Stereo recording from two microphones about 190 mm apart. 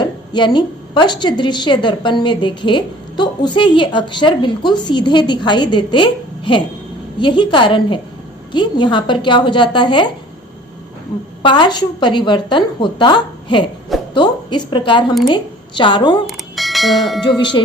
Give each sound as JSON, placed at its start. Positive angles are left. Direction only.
{"t": 0.0, "sound": "a woman's voice", "side_deg": 25}
{"t": 11.4, "sound": "a woman's voice", "side_deg": 25}
{"t": 16.2, "sound": "bell", "side_deg": 0}
{"t": 17.3, "sound": "a woman's voice", "side_deg": 25}